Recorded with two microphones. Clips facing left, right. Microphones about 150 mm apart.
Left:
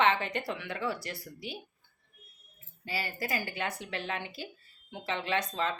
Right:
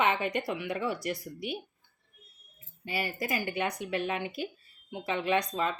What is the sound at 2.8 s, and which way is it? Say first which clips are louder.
Speech: right 3 dB; 20° right (ahead or behind).